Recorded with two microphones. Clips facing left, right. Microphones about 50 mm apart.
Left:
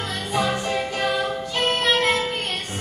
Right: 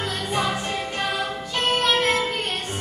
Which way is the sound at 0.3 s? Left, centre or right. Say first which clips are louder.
Left 2 dB; centre.